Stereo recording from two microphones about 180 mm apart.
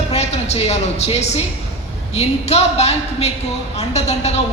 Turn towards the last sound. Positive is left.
turn(degrees=35)  # may be behind; listen again after turning